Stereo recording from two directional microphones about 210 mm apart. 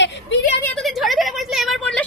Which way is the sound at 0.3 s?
60° left (ahead or behind).